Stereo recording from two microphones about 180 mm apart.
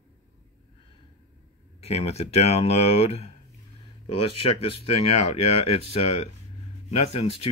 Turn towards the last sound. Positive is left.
turn(degrees=35)  # may be behind; listen again after turning